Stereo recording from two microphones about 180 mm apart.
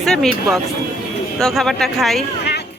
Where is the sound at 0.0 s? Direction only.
Centre (ahead or behind).